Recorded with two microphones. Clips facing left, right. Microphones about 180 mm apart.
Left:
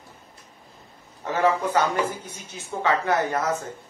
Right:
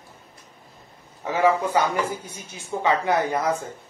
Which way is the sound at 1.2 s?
10° right (ahead or behind).